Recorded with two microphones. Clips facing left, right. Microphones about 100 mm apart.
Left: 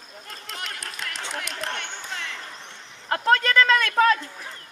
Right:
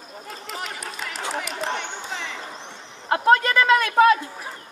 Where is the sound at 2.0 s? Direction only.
10° right (ahead or behind).